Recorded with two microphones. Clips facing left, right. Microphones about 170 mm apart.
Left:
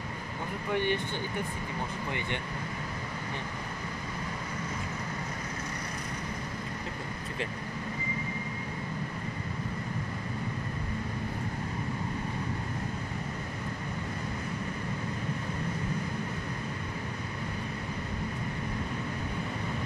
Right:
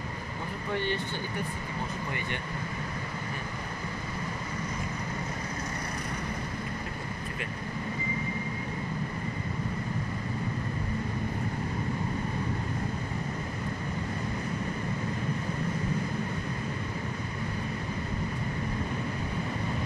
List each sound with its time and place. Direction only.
0.7 s speech: 15° left (ahead or behind)